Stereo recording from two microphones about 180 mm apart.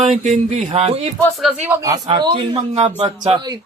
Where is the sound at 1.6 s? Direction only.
15° right (ahead or behind).